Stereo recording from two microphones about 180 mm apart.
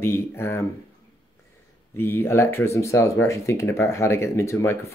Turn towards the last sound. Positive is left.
turn(degrees=15)  # may be behind; listen again after turning